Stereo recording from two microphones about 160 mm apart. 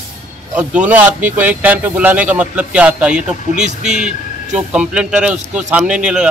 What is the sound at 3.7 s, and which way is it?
Speech, 45° right (ahead or behind).